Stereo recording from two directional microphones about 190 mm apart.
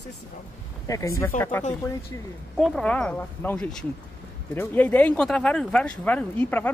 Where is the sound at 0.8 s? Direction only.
15° left (ahead or behind).